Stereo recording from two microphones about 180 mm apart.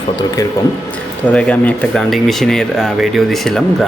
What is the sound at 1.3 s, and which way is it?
Speech, 5° left (ahead or behind).